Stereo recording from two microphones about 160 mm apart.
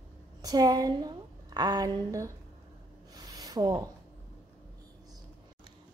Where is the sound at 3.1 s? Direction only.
25° right (ahead or behind).